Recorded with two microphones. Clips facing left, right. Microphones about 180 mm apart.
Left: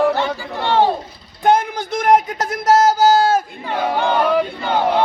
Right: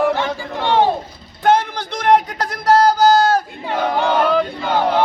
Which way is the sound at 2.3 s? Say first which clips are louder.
Left 2 dB; 20° left (ahead or behind).